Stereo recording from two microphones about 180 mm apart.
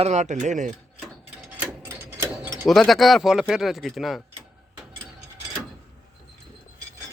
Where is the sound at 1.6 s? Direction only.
10° right (ahead or behind).